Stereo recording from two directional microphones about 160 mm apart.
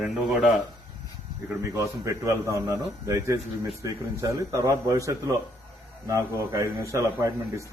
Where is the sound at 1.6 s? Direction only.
20° right (ahead or behind).